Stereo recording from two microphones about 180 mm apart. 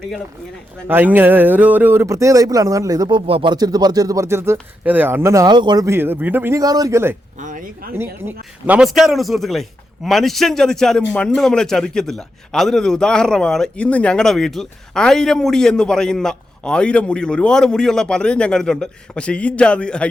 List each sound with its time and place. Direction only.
0.9 s speech: 10° right (ahead or behind)
7.3 s speech: 45° right (ahead or behind)
7.9 s a man's voice: 10° right (ahead or behind); by 20.1 s 5° left (ahead or behind)